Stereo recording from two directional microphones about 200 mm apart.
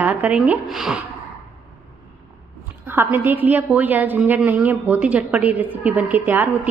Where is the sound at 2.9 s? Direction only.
10° right (ahead or behind).